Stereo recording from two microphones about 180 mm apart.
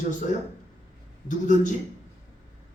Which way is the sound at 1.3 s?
45° left (ahead or behind).